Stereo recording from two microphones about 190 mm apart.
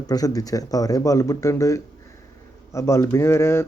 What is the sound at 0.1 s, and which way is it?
Speech, 20° left (ahead or behind).